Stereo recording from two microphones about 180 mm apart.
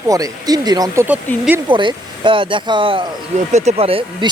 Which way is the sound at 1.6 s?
25° right (ahead or behind).